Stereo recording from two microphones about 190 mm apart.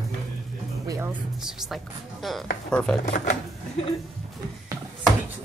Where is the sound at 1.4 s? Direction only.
Centre (ahead or behind).